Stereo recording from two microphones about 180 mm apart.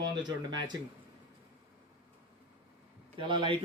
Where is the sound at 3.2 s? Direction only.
25° right (ahead or behind).